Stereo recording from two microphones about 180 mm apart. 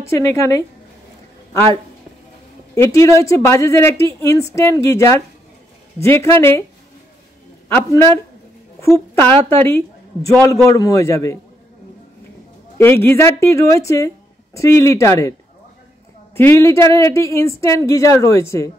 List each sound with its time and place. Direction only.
0.1 s speech: 15° left (ahead or behind)
2.7 s speech: 15° left (ahead or behind)
7.6 s a woman's voice: 15° left (ahead or behind)
12.7 s speech: 15° left (ahead or behind)
16.3 s speech: 15° left (ahead or behind)